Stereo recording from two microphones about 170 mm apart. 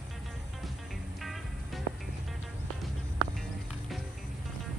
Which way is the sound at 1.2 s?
Centre (ahead or behind).